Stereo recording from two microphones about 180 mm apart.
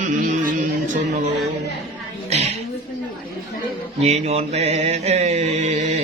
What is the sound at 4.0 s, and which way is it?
Mantra, 35° right (ahead or behind).